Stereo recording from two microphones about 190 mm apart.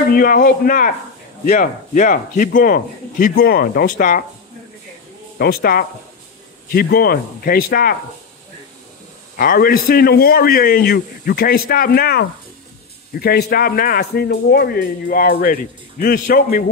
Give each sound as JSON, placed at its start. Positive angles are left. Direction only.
{"t": 0.1, "sound": "a man's voice", "side_deg": 50}
{"t": 5.4, "sound": "a man's voice", "side_deg": 55}
{"t": 9.4, "sound": "a man's voice", "side_deg": 50}